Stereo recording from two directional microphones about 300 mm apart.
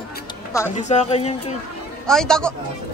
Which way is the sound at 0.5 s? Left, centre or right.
Centre.